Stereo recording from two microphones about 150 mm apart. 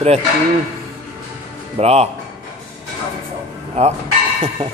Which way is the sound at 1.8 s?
45° right (ahead or behind).